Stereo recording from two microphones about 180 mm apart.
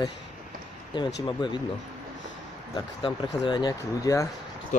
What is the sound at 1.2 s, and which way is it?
Speech, 25° left (ahead or behind).